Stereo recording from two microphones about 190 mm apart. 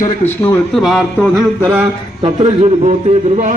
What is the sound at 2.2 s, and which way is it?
Speech, 30° right (ahead or behind).